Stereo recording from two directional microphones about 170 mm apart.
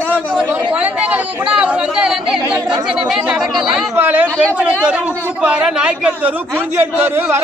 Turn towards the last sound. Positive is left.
turn(degrees=-10)  # may be behind; listen again after turning